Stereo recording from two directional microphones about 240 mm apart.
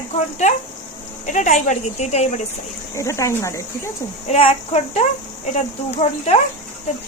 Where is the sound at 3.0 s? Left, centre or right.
Centre.